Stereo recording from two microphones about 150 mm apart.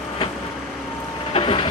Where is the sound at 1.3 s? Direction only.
35° left (ahead or behind).